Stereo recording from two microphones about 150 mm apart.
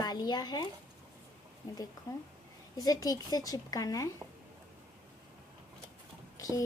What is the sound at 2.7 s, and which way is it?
A woman's voice, 25° left (ahead or behind).